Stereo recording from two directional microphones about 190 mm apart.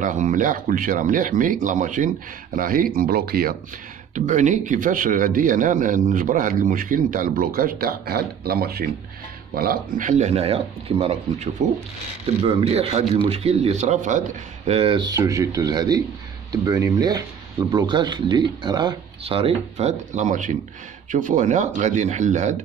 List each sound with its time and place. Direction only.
0.0 s a man's voice: 40° right (ahead or behind)
4.1 s a man's voice: 40° right (ahead or behind)